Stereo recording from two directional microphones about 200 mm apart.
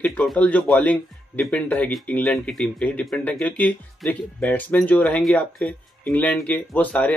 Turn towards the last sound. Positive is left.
turn(degrees=10)  # may be behind; listen again after turning